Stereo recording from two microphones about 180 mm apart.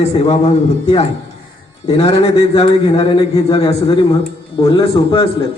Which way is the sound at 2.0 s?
30° left (ahead or behind).